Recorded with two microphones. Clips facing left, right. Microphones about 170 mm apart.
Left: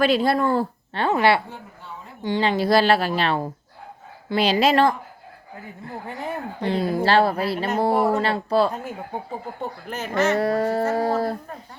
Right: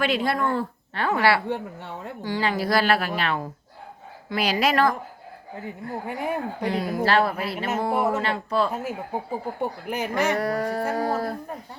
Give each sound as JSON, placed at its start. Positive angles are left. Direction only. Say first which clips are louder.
{"t": 0.0, "sound": "speech", "louder": "left 4 dB", "side_deg": 35}
{"t": 1.5, "sound": "a woman's voice", "louder": "right 9 dB", "side_deg": -70}
{"t": 2.2, "sound": "a woman's voice", "louder": "left 4 dB", "side_deg": 25}
{"t": 5.6, "sound": "speech", "louder": "right 3 dB", "side_deg": -10}
{"t": 6.6, "sound": "a woman's voice", "louder": "left 6 dB", "side_deg": 30}
{"t": 8.7, "sound": "speech", "louder": "right 2 dB", "side_deg": -5}
{"t": 10.3, "sound": "a woman's voice", "louder": "left 4 dB", "side_deg": 25}